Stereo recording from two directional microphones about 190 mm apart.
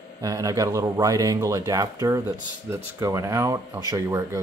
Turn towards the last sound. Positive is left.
turn(degrees=-15)  # may be behind; listen again after turning